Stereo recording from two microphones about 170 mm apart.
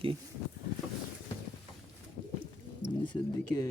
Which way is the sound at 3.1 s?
20° left (ahead or behind).